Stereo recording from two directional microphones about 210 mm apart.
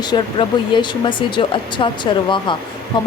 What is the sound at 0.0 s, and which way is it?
Speech, 20° left (ahead or behind).